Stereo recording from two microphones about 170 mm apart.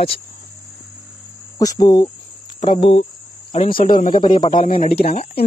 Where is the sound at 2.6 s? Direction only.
35° left (ahead or behind).